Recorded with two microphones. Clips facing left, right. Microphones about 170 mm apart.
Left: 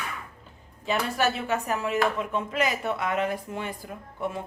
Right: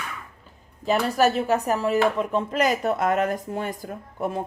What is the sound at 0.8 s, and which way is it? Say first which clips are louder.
A woman's voice: right 5 dB; 40° right (ahead or behind).